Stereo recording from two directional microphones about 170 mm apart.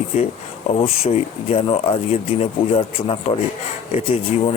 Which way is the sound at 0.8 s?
35° left (ahead or behind).